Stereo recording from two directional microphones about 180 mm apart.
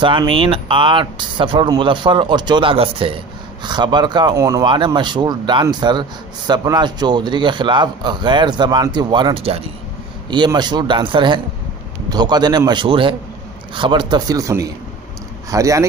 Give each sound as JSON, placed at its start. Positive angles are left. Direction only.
{"t": 0.0, "sound": "speech", "side_deg": -25}